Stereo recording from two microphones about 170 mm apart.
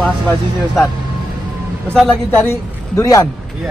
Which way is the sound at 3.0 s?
20° left (ahead or behind).